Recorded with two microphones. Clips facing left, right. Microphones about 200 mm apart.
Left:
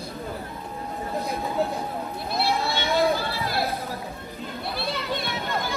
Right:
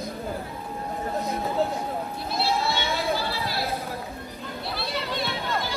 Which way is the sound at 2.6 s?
50° left (ahead or behind).